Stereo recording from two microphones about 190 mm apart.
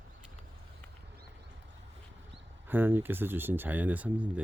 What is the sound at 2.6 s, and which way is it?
Speech, 10° right (ahead or behind).